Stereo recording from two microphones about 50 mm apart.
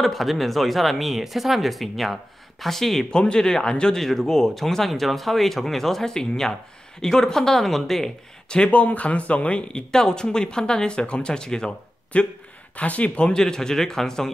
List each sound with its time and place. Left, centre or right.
0.0 s speech: centre
8.5 s speech: left
13.4 s speech: centre